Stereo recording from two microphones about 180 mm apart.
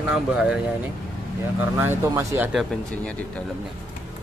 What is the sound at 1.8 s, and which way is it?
Speech, 15° right (ahead or behind).